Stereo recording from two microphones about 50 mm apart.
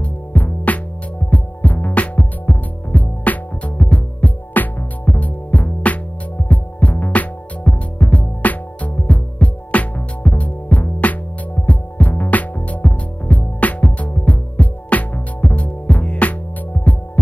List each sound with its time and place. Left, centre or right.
0.0 s music: left